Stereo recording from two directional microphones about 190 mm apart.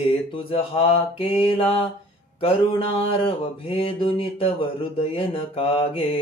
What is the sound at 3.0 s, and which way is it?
Speech, 30° left (ahead or behind).